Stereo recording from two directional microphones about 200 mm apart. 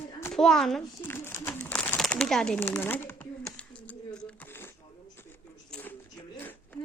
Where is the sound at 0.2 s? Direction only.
5° left (ahead or behind).